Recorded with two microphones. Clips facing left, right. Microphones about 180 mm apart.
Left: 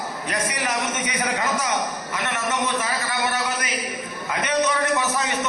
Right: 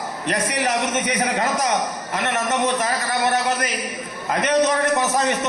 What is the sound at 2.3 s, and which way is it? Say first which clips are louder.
Speech: right 4 dB; 40° right (ahead or behind).